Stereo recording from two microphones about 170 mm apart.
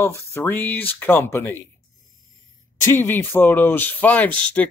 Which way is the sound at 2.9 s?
15° left (ahead or behind).